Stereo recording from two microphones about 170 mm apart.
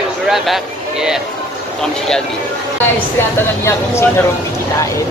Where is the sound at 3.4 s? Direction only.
15° left (ahead or behind).